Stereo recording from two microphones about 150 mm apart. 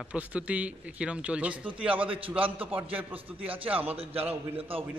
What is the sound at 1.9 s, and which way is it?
Speech, 35° right (ahead or behind).